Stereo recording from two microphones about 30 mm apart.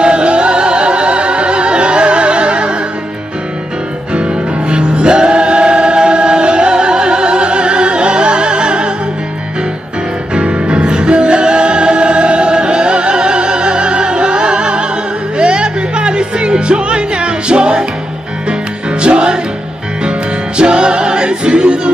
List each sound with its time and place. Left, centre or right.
0.0 s music: right
4.1 s music: right
10.3 s music: right